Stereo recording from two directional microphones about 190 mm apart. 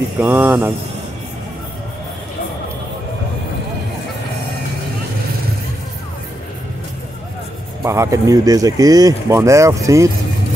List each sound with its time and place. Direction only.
0.2 s speech: 10° right (ahead or behind)
7.8 s speech: 15° right (ahead or behind)